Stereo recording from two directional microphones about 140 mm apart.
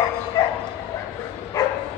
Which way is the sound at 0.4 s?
30° left (ahead or behind).